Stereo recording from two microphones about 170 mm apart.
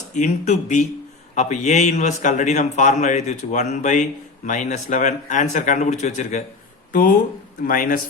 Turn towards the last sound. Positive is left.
turn(degrees=55)  # may be behind; listen again after turning